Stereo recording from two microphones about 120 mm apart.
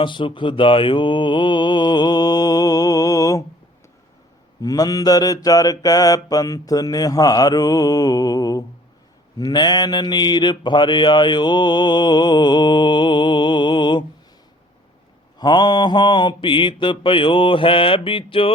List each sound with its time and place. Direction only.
0.0 s mantra: 45° left (ahead or behind)
4.6 s mantra: 30° left (ahead or behind)
15.4 s mantra: 35° left (ahead or behind)